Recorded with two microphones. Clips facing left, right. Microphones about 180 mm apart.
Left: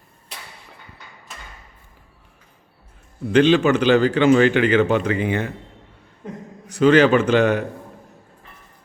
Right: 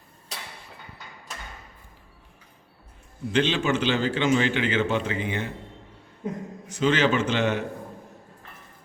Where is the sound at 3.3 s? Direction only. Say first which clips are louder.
Left 9 dB; 60° left (ahead or behind).